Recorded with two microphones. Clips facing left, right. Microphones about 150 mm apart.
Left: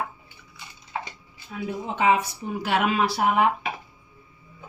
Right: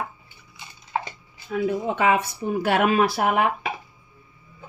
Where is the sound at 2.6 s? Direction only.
50° right (ahead or behind).